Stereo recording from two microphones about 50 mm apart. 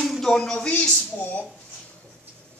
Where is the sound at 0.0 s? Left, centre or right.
Centre.